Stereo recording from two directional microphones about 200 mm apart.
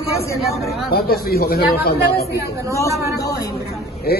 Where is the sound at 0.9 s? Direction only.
50° left (ahead or behind).